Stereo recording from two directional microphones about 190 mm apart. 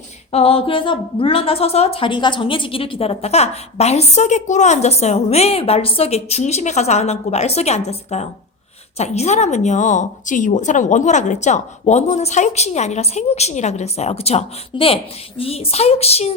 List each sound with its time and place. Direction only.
0.3 s a woman's voice: 30° left (ahead or behind)